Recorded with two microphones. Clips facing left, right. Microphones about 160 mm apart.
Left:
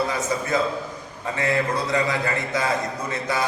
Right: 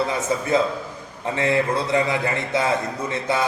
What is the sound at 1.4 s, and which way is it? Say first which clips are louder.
A man's voice: right 2 dB; 25° right (ahead or behind).